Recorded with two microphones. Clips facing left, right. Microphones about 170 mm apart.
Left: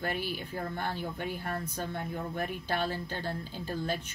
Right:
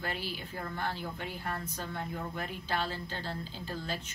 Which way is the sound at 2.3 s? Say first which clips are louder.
Left 3 dB; 50° left (ahead or behind).